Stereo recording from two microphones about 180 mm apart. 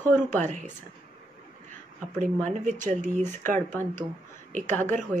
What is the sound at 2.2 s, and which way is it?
Speech, 45° right (ahead or behind).